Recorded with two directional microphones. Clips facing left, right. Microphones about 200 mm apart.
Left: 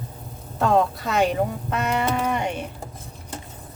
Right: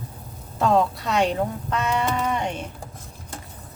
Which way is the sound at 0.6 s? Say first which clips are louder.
Even; centre (ahead or behind).